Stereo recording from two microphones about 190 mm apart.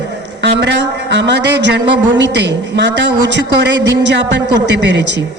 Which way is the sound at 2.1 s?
65° right (ahead or behind).